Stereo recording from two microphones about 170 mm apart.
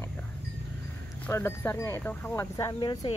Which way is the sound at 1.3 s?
15° left (ahead or behind).